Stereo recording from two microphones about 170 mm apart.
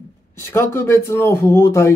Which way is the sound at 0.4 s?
15° left (ahead or behind).